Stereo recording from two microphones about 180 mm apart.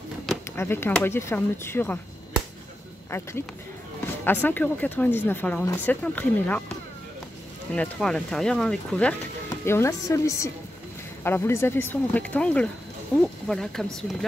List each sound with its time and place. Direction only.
0.6 s speech: 10° left (ahead or behind)
7.7 s speech: 5° left (ahead or behind)
9.5 s speech: 15° left (ahead or behind)